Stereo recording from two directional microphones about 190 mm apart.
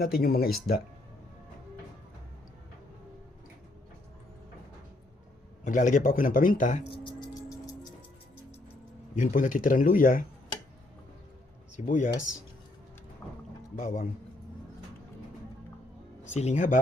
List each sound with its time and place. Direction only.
0.0 s speech: 55° left (ahead or behind)
5.6 s speech: 40° left (ahead or behind)
7.0 s music: 20° left (ahead or behind)
9.1 s speech: 45° left (ahead or behind)
11.9 s speech: 45° left (ahead or behind)
13.2 s rowboat: 10° left (ahead or behind)
13.7 s speech: 45° left (ahead or behind)
16.2 s speech: 35° left (ahead or behind)